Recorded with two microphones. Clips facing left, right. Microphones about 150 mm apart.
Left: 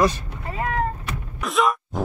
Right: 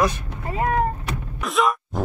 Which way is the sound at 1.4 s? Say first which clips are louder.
Even; centre (ahead or behind).